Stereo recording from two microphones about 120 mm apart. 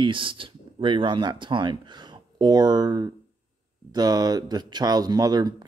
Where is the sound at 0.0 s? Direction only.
45° right (ahead or behind).